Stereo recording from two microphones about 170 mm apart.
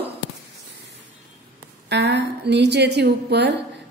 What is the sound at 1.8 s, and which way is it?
A woman's voice, 90° right.